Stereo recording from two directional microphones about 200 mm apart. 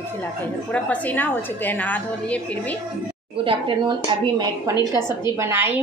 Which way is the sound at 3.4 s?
25° right (ahead or behind).